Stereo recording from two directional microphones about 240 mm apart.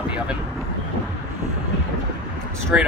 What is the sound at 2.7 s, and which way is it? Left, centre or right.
Speech, centre.